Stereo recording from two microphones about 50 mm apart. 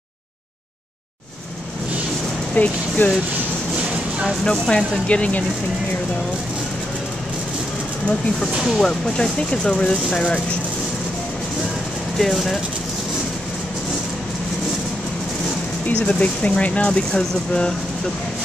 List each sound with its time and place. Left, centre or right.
2.5 s speech: left
4.5 s speech: centre
8.6 s speech: centre; by 10.4 s left
12.2 s speech: centre
16.1 s speech: left